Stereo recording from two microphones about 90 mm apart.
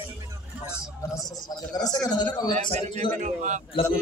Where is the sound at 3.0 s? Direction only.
65° left (ahead or behind).